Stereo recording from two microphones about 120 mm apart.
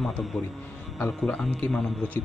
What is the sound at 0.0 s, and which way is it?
A man's voice, centre (ahead or behind).